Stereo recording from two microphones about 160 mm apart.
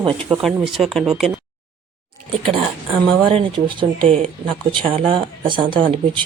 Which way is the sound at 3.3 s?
35° right (ahead or behind).